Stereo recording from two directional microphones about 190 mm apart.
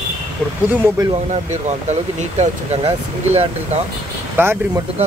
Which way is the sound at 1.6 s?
35° right (ahead or behind).